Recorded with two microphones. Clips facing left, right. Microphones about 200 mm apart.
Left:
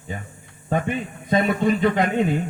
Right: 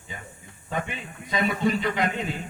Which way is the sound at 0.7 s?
50° left (ahead or behind).